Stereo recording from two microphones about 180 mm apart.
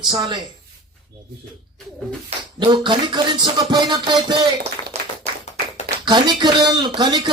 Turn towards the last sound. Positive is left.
turn(degrees=-25)  # may be behind; listen again after turning